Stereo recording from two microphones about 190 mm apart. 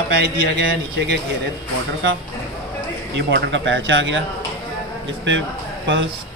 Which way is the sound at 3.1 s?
65° right (ahead or behind).